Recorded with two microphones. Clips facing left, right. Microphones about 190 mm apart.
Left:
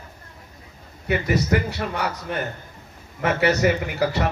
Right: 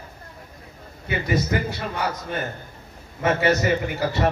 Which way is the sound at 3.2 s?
65° left (ahead or behind).